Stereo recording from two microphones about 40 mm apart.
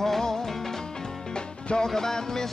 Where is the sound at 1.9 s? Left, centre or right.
Centre.